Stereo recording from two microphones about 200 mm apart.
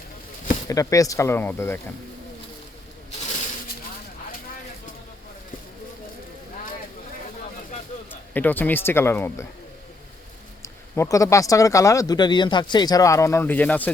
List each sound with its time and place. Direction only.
0.7 s a man's voice: 15° left (ahead or behind)
8.3 s a man's voice: 10° left (ahead or behind)
10.6 s a man's voice: 15° left (ahead or behind)